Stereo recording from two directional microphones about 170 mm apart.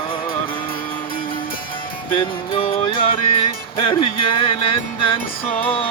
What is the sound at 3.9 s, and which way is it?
Speech, 30° left (ahead or behind).